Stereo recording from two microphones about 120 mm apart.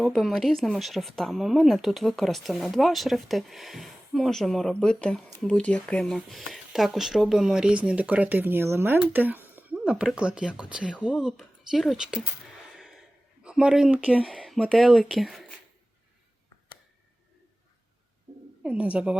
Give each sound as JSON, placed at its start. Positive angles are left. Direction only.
{"t": 0.0, "sound": "speech", "side_deg": 5}
{"t": 9.7, "sound": "speech", "side_deg": -5}
{"t": 12.7, "sound": "a sound", "side_deg": 0}
{"t": 13.4, "sound": "speech", "side_deg": -10}
{"t": 14.3, "sound": "speech", "side_deg": 0}
{"t": 18.6, "sound": "speech", "side_deg": -10}